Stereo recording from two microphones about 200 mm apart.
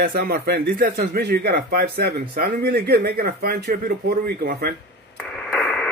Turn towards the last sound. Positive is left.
turn(degrees=5)  # may be behind; listen again after turning